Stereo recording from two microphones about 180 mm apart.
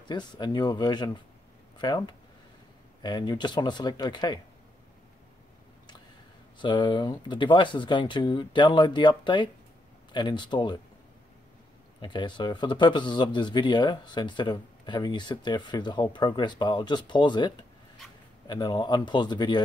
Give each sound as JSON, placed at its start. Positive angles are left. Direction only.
{"t": 0.1, "sound": "speech", "side_deg": 25}
{"t": 6.6, "sound": "speech", "side_deg": 25}
{"t": 12.0, "sound": "speech", "side_deg": 25}